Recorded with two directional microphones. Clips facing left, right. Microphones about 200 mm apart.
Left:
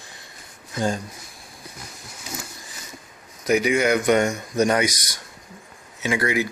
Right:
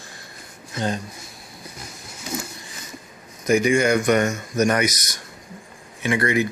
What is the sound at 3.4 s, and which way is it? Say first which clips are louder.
Speech: right 1 dB; 10° left (ahead or behind).